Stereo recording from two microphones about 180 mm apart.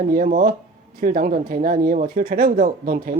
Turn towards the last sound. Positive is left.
turn(degrees=-55)  # may be behind; listen again after turning